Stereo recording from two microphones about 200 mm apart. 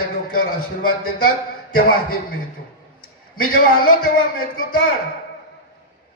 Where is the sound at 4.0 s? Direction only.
45° left (ahead or behind).